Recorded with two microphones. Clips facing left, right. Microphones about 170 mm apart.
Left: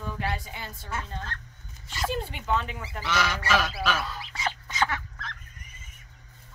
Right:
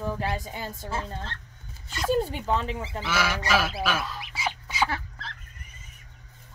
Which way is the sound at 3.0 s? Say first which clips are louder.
Even; 10° right (ahead or behind).